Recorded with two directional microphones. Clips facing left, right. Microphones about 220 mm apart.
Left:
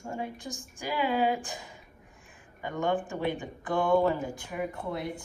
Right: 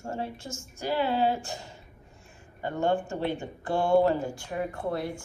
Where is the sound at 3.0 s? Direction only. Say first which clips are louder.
Right 1 dB; 15° left (ahead or behind).